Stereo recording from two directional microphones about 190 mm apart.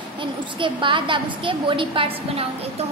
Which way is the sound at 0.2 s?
25° right (ahead or behind).